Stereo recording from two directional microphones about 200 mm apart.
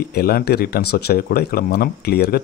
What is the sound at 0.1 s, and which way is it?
Speech, 50° left (ahead or behind).